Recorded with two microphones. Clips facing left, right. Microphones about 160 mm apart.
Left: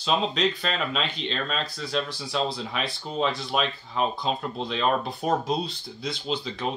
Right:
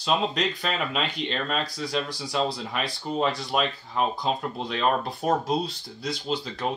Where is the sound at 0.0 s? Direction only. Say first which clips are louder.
Left 1 dB; 5° right (ahead or behind).